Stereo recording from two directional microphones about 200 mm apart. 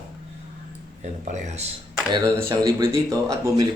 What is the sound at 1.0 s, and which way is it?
Speech, 35° right (ahead or behind).